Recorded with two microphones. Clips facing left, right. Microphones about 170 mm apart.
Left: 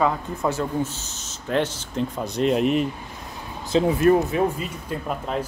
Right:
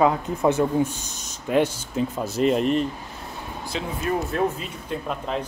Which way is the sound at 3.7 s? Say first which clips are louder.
Left 11 dB; 35° left (ahead or behind).